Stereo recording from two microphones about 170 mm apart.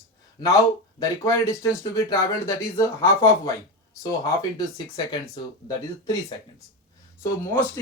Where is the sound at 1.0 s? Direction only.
20° left (ahead or behind).